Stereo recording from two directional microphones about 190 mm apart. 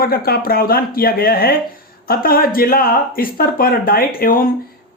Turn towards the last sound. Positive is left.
turn(degrees=50)  # may be behind; listen again after turning